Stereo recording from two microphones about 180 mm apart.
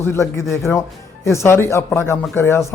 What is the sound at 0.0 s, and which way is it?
A man's voice, 15° left (ahead or behind).